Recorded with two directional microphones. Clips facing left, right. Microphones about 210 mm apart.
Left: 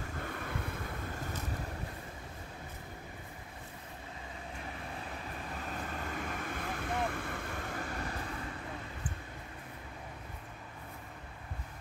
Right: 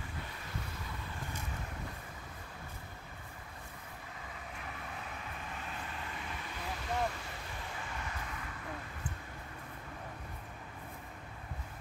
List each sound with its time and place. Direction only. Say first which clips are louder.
0.3 s vehicle: left 7 dB; 55° left (ahead or behind)
5.7 s vehicle: left 4 dB; 45° left (ahead or behind)